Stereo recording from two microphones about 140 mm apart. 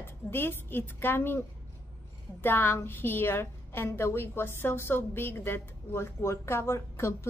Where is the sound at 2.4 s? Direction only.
15° left (ahead or behind).